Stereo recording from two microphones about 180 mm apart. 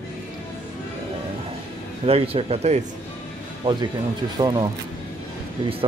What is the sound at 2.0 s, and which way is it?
Speech, 35° right (ahead or behind).